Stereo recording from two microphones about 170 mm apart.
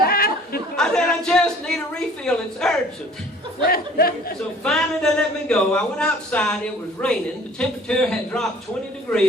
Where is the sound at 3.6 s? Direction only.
60° left (ahead or behind).